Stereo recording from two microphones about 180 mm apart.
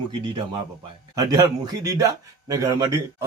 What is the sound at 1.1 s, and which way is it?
Speech, 20° right (ahead or behind).